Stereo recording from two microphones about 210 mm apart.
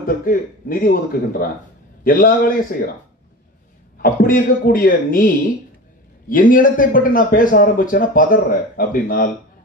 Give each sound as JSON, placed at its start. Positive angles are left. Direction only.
{"t": 0.0, "sound": "a man's voice", "side_deg": 40}
{"t": 4.0, "sound": "a man's voice", "side_deg": 45}